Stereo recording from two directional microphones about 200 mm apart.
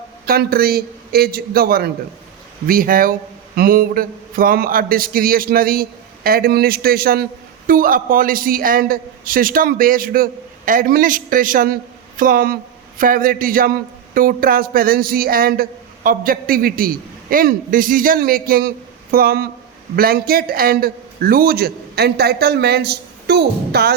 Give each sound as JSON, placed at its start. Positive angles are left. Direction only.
{"t": 0.3, "sound": "a man's voice", "side_deg": -50}